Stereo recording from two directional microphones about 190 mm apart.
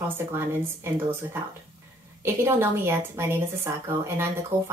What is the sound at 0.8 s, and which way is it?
A woman's voice, 10° right (ahead or behind).